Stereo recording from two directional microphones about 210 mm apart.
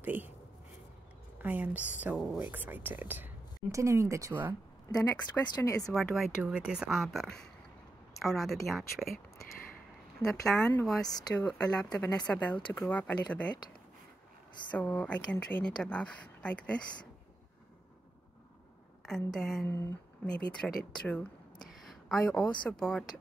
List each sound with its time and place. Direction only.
0.0 s speech: 10° right (ahead or behind)
1.4 s speech: 10° right (ahead or behind)
4.9 s speech: 5° left (ahead or behind)
5.9 s a woman's voice: centre (ahead or behind)
10.4 s speech: 10° left (ahead or behind)
11.1 s speech: 20° left (ahead or behind)
11.4 s a woman's voice: 5° left (ahead or behind)
14.7 s a woman's voice: 10° left (ahead or behind)
19.0 s a woman's voice: centre (ahead or behind)
21.6 s a sound: centre (ahead or behind)
22.6 s a woman's voice: 5° left (ahead or behind)